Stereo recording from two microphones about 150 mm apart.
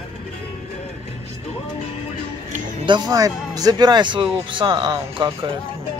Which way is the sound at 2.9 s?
25° right (ahead or behind).